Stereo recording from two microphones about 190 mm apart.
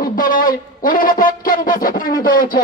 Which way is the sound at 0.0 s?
50° left (ahead or behind).